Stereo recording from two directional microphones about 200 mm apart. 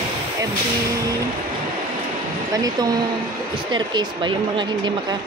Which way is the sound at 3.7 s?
20° right (ahead or behind).